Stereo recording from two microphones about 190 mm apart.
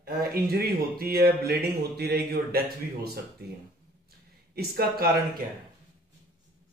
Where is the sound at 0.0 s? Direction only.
50° right (ahead or behind).